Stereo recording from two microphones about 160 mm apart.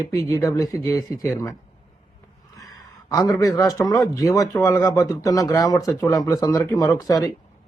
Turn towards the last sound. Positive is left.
turn(degrees=20)  # may be behind; listen again after turning